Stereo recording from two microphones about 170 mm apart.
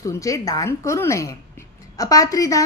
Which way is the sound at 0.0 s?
20° left (ahead or behind).